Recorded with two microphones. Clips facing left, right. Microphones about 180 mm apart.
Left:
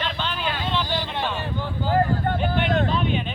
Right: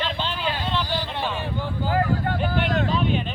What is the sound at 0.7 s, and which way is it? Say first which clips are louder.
Vehicle: left 1 dB; 5° right (ahead or behind).